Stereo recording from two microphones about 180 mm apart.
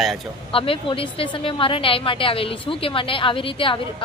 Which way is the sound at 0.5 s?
30° left (ahead or behind).